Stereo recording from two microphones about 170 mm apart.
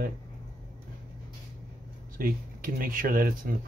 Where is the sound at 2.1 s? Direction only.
60° right (ahead or behind).